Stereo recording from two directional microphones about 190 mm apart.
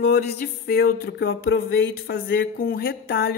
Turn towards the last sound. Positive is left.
turn(degrees=55)  # may be behind; listen again after turning